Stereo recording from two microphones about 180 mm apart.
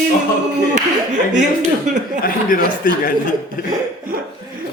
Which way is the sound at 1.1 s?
45° right (ahead or behind).